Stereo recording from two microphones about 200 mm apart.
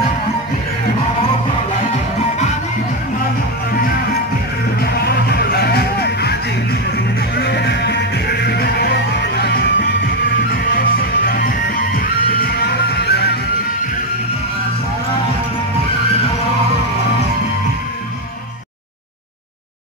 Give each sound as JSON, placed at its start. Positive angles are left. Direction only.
{"t": 5.0, "sound": "music", "side_deg": 55}
{"t": 7.3, "sound": "music", "side_deg": 55}